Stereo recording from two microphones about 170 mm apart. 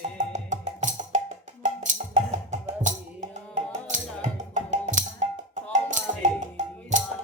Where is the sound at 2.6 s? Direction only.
45° right (ahead or behind).